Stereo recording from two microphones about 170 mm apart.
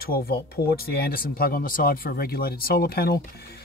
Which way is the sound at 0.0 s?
65° left (ahead or behind).